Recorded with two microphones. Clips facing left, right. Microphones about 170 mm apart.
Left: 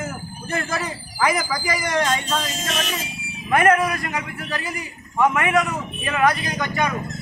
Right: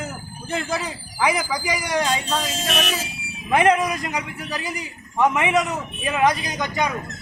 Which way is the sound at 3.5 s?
15° right (ahead or behind).